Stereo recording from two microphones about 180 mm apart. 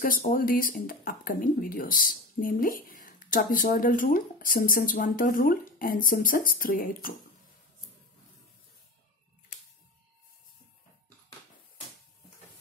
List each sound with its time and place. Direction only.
0.0 s speech: 50° left (ahead or behind)